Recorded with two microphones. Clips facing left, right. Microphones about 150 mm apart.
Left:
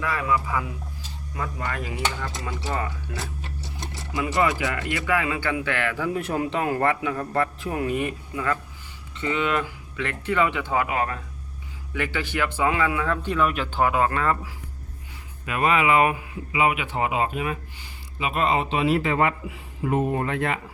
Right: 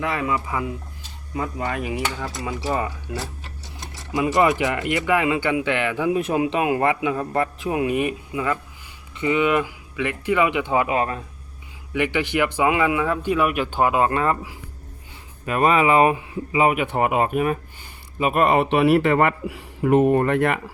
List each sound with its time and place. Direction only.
0.0 s a man's voice: 25° right (ahead or behind)
4.1 s speech: 20° right (ahead or behind)
15.4 s a man's voice: 40° right (ahead or behind); by 20.6 s 60° right (ahead or behind)